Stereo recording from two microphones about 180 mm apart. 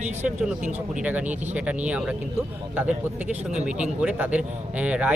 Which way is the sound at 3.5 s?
5° right (ahead or behind).